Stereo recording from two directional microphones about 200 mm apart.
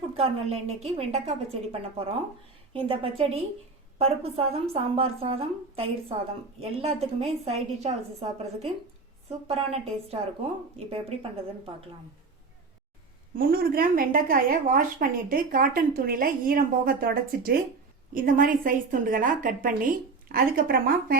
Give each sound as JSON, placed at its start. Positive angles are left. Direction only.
{"t": 0.2, "sound": "a woman's voice", "side_deg": -30}
{"t": 2.7, "sound": "a woman's voice", "side_deg": -25}
{"t": 13.3, "sound": "a woman's voice", "side_deg": -45}